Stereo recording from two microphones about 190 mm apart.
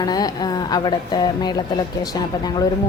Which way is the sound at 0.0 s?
20° left (ahead or behind).